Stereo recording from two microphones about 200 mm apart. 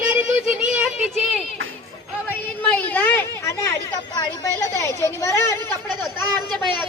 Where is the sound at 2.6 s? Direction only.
10° left (ahead or behind).